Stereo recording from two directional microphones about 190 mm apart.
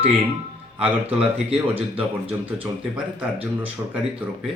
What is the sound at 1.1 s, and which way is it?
Speech, 30° right (ahead or behind).